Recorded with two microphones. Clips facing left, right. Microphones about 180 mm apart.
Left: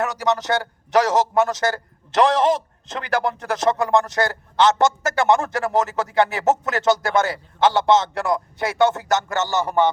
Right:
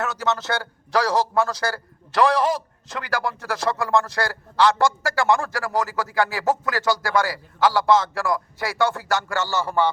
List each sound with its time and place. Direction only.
0.0 s a man's voice: 15° left (ahead or behind)